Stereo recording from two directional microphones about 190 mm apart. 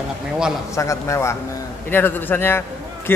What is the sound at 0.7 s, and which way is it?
A woman's voice, 15° left (ahead or behind).